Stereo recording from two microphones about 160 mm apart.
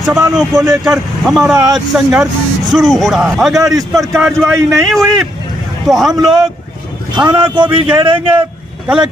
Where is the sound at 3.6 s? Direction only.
20° right (ahead or behind).